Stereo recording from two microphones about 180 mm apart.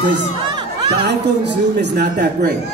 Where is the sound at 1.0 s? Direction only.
70° right (ahead or behind).